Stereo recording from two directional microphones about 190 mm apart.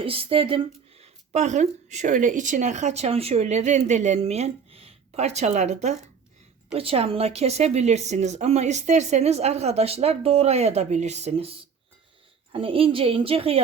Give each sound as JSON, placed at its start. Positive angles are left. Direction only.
{"t": 0.0, "sound": "a woman's voice", "side_deg": -30}